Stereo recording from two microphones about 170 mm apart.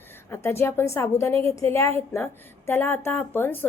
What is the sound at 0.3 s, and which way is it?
A woman's voice, 15° left (ahead or behind).